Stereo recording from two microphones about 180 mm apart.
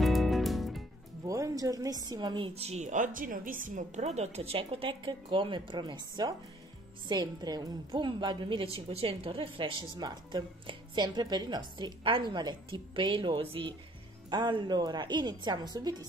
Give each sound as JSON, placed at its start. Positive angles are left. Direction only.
{"t": 0.0, "sound": "music", "side_deg": 0}
{"t": 1.2, "sound": "a woman's voice", "side_deg": -20}